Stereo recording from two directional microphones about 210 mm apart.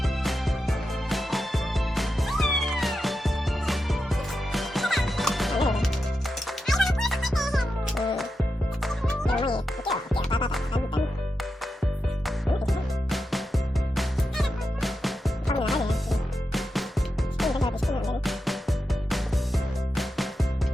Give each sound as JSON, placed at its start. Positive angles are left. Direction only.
{"t": 0.0, "sound": "music", "side_deg": 0}
{"t": 10.2, "sound": "music", "side_deg": 25}
{"t": 12.6, "sound": "music", "side_deg": 0}